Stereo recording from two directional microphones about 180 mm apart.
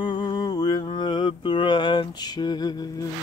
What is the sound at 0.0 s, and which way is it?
Mantra, 25° left (ahead or behind).